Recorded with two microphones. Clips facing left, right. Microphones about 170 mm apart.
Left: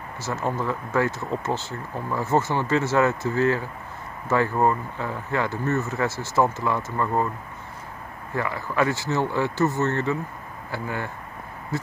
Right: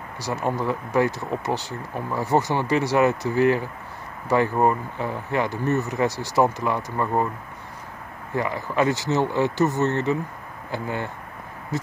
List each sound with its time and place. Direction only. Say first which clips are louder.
0.2 s speech: right 2 dB; 15° right (ahead or behind)
8.4 s speech: right 1 dB; 20° right (ahead or behind)